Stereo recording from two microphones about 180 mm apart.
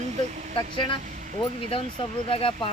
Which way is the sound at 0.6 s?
25° left (ahead or behind).